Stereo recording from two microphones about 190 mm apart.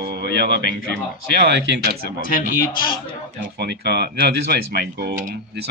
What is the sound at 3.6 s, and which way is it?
Speech, 60° right (ahead or behind).